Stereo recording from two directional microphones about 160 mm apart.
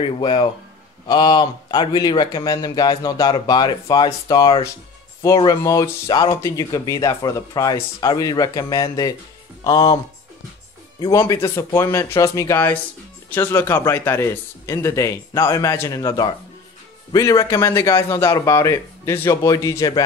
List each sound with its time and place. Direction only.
0.0 s speech: 30° left (ahead or behind)
11.0 s a man's voice: 20° left (ahead or behind)